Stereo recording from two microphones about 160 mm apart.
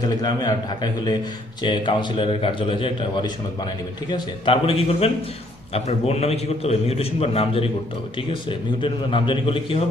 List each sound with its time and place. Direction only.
0.2 s a man's voice: 25° left (ahead or behind)